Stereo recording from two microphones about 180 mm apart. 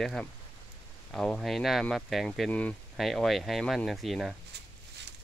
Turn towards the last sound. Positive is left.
turn(degrees=0)  # may be behind; listen again after turning